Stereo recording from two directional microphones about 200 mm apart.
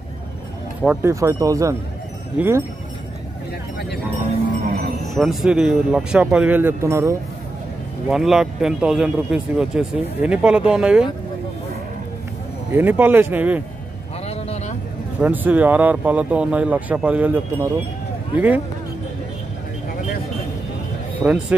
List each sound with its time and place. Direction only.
1.0 s speech: 15° right (ahead or behind)
4.6 s music: 40° right (ahead or behind)
5.1 s a man's voice: centre (ahead or behind)
8.1 s a man's voice: centre (ahead or behind)
12.7 s speech: 10° right (ahead or behind)
14.2 s a sound: 30° left (ahead or behind)
15.1 s speech: 10° right (ahead or behind)
21.2 s speech: 5° right (ahead or behind)